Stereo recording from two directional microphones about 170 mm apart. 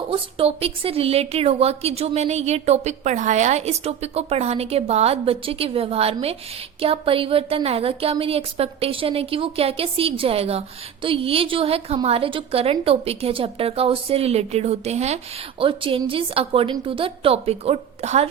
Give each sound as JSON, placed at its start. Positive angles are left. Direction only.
{"t": 0.1, "sound": "a woman's voice", "side_deg": -35}